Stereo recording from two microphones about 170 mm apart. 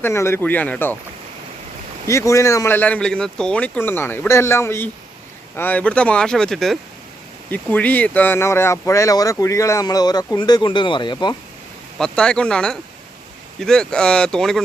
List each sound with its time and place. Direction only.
0.0 s speech: 15° left (ahead or behind)
2.0 s speech: 20° left (ahead or behind)
11.9 s speech: 5° left (ahead or behind)